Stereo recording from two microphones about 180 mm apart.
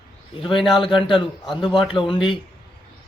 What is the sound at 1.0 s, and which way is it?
Speech, 25° left (ahead or behind).